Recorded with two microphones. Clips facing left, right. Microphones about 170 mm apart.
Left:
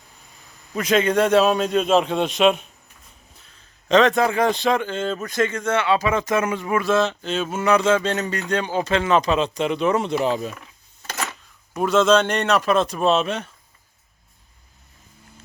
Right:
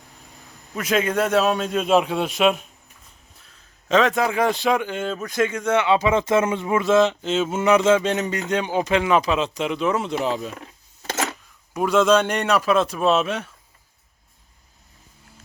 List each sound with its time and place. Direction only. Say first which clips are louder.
0.8 s a man's voice: left 3 dB; 5° right (ahead or behind)
11.7 s speech: even; 10° right (ahead or behind)